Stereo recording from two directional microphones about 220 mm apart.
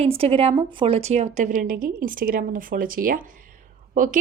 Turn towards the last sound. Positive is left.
turn(degrees=-35)  # may be behind; listen again after turning